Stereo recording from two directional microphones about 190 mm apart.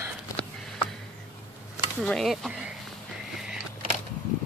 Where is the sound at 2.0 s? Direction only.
Centre (ahead or behind).